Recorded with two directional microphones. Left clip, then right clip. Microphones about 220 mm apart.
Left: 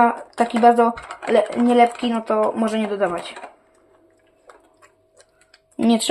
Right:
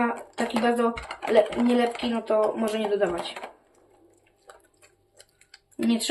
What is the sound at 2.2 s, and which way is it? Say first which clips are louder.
Speech: left 3 dB; 45° left (ahead or behind).